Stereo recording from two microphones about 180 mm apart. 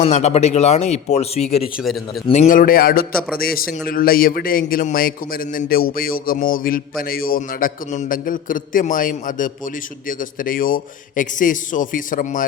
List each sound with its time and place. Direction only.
0.0 s speech: 35° left (ahead or behind)
1.8 s speech: centre (ahead or behind)
2.2 s a man's voice: 40° left (ahead or behind)